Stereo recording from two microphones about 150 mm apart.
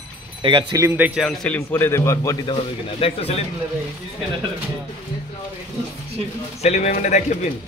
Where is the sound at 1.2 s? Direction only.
5° left (ahead or behind).